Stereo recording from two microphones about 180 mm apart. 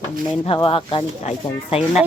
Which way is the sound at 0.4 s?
30° left (ahead or behind).